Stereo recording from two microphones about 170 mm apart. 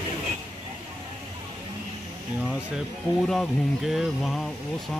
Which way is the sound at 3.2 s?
Centre (ahead or behind).